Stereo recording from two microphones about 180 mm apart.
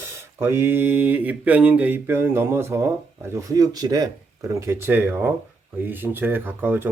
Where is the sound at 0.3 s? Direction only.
15° right (ahead or behind).